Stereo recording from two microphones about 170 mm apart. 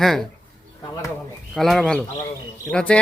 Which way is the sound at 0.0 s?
Centre (ahead or behind).